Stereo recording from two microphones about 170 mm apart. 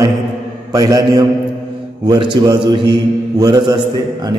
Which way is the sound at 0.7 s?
20° right (ahead or behind).